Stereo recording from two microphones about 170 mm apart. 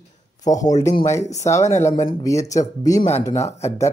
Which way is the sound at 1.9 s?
40° left (ahead or behind).